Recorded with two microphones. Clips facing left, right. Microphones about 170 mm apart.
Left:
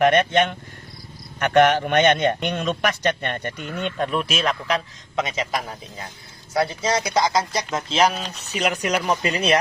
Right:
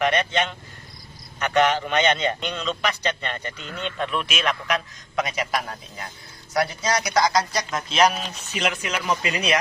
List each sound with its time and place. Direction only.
0.0 s a man's voice: 50° left (ahead or behind); by 9.6 s 35° left (ahead or behind)